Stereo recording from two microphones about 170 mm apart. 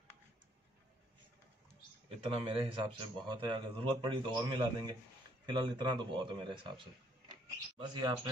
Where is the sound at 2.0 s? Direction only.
30° right (ahead or behind).